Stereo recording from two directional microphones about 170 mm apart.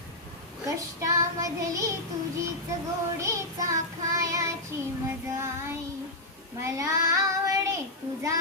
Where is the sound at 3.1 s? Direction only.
20° right (ahead or behind).